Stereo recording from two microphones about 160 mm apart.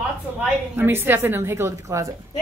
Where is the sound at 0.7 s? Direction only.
15° right (ahead or behind).